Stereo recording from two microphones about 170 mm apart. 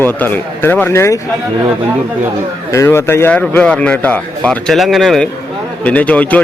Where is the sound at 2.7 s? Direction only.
15° left (ahead or behind).